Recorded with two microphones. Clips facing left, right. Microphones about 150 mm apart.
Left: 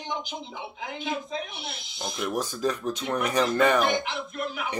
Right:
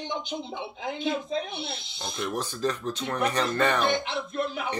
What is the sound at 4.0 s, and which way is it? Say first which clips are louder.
Speech: right 2 dB; 30° right (ahead or behind).